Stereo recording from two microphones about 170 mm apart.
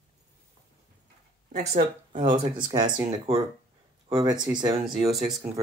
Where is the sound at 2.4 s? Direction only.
25° right (ahead or behind).